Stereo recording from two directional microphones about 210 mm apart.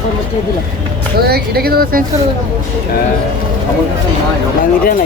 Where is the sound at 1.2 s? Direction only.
45° right (ahead or behind).